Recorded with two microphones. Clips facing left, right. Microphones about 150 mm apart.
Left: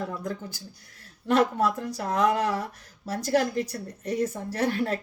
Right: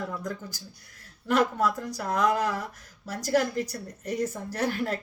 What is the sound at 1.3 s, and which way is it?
Speech, 30° left (ahead or behind).